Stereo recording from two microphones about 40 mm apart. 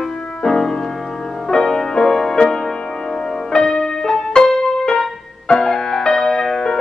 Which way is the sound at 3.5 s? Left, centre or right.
Centre.